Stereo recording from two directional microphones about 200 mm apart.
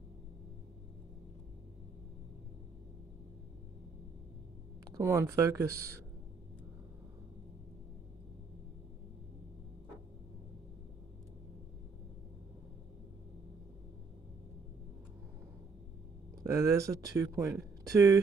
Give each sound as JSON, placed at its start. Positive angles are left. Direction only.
{"t": 4.9, "sound": "speech", "side_deg": -15}
{"t": 16.4, "sound": "speech", "side_deg": -15}